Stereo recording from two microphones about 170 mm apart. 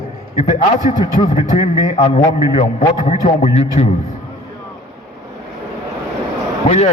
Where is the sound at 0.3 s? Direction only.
40° left (ahead or behind).